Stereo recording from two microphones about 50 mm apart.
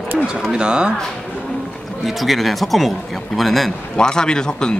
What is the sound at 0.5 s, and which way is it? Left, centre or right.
Speech, centre.